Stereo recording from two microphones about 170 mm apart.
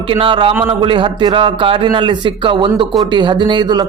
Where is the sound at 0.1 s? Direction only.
30° right (ahead or behind).